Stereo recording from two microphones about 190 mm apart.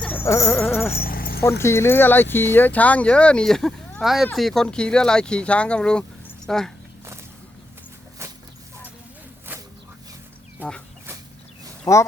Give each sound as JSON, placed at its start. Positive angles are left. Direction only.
{"t": 0.0, "sound": "dog", "side_deg": 10}
{"t": 0.9, "sound": "keys jangling", "side_deg": 50}
{"t": 1.4, "sound": "speech", "side_deg": 15}
{"t": 8.2, "sound": "a sound", "side_deg": -15}
{"t": 11.9, "sound": "speech", "side_deg": 20}